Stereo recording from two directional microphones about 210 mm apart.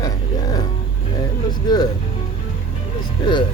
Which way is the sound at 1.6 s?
20° left (ahead or behind).